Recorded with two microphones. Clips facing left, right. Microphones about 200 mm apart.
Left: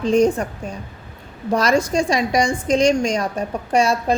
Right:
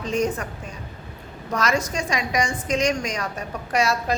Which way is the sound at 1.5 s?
30° left (ahead or behind).